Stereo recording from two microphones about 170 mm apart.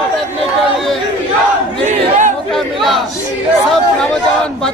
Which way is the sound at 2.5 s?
Centre (ahead or behind).